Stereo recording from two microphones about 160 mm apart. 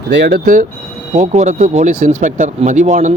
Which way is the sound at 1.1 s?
45° right (ahead or behind).